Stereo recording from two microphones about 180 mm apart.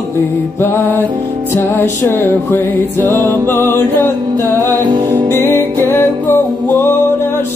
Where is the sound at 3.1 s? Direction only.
20° right (ahead or behind).